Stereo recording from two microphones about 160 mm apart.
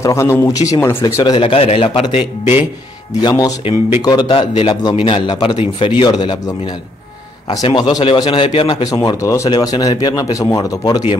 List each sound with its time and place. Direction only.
0.0 s a man's voice: 15° left (ahead or behind)